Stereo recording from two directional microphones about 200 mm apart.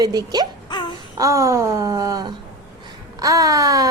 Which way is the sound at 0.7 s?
25° left (ahead or behind).